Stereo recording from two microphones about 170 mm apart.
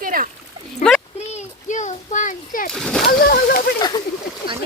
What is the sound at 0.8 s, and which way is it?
Speech, 5° left (ahead or behind).